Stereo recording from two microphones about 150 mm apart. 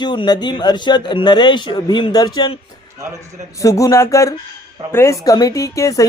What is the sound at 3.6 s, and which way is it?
Speech, 20° left (ahead or behind).